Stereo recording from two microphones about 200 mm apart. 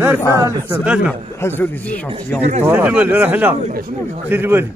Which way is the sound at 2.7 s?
10° right (ahead or behind).